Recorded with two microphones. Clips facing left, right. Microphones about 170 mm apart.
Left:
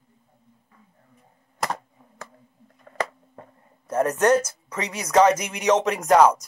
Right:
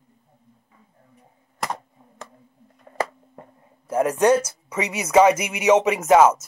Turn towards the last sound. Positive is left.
turn(degrees=-5)  # may be behind; listen again after turning